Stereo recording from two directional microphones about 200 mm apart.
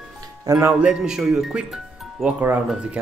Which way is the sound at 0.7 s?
5° right (ahead or behind).